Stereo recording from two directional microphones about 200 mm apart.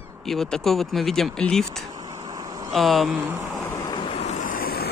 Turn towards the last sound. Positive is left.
turn(degrees=50)  # may be behind; listen again after turning